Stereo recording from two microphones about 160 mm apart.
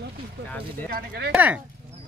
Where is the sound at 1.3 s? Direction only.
10° right (ahead or behind).